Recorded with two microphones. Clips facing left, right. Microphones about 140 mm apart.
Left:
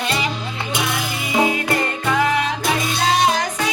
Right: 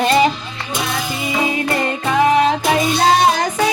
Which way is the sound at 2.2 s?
30° right (ahead or behind).